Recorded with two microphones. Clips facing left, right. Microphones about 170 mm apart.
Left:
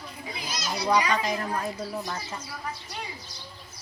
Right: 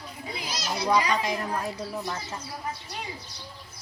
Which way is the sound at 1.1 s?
Centre (ahead or behind).